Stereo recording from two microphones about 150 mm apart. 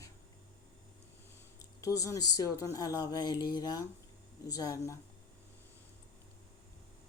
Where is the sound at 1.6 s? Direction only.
25° left (ahead or behind).